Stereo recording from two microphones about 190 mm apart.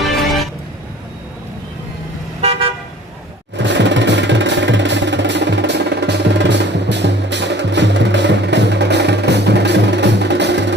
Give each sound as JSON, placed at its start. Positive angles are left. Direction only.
{"t": 2.4, "sound": "car", "side_deg": -30}
{"t": 3.6, "sound": "music", "side_deg": -70}